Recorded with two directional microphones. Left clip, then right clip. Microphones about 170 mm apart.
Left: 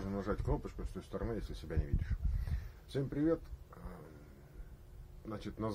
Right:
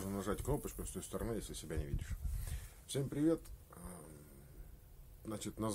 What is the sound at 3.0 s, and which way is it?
Speech, 15° right (ahead or behind).